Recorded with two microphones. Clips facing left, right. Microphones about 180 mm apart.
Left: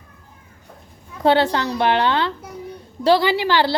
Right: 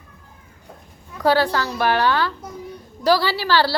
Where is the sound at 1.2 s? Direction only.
25° left (ahead or behind).